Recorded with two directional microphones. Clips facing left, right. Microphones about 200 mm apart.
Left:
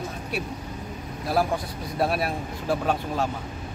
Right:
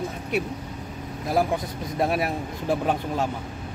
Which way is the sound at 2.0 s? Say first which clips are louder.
Right 1 dB; 15° right (ahead or behind).